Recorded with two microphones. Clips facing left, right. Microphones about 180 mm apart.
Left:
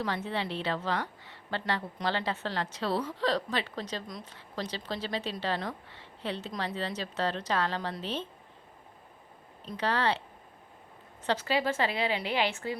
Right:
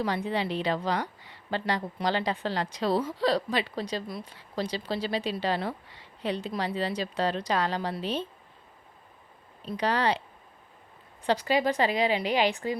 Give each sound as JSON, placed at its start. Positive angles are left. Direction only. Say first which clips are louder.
{"t": 0.0, "sound": "a woman's voice", "louder": "right 4 dB", "side_deg": -10}
{"t": 9.7, "sound": "a woman's voice", "louder": "right 3 dB", "side_deg": -15}
{"t": 11.3, "sound": "a woman's voice", "louder": "right 4 dB", "side_deg": -15}